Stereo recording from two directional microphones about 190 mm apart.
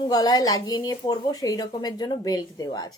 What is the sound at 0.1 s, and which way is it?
Speech, 20° left (ahead or behind).